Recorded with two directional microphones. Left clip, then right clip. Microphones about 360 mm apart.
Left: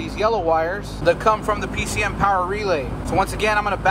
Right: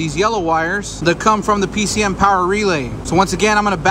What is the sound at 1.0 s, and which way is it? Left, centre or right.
Speech, centre.